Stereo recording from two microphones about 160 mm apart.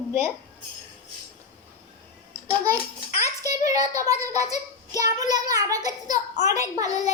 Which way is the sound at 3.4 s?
20° right (ahead or behind).